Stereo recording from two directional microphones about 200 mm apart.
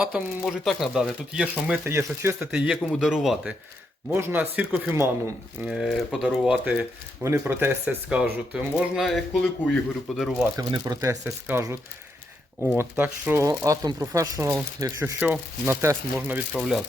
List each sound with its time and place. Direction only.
0.0 s speech: centre (ahead or behind)
10.6 s speech: 20° right (ahead or behind); by 16.8 s centre (ahead or behind)